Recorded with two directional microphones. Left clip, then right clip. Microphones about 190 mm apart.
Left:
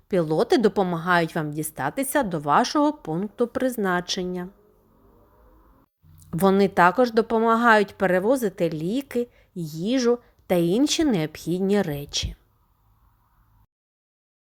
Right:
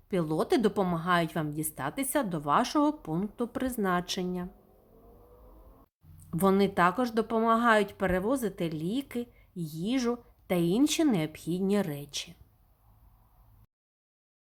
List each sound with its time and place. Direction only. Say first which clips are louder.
0.1 s speech: left 7 dB; 25° left (ahead or behind)
6.1 s speech: left 6 dB; 25° left (ahead or behind)